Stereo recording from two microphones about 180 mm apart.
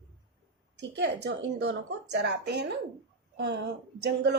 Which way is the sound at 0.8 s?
75° right (ahead or behind).